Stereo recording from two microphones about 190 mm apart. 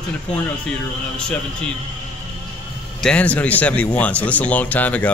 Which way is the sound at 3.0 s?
5° left (ahead or behind).